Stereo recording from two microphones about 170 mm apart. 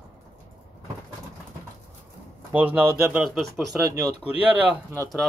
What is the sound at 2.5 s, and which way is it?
Speech, 5° right (ahead or behind).